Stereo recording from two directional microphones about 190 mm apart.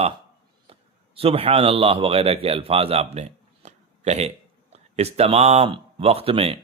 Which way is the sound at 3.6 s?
35° right (ahead or behind).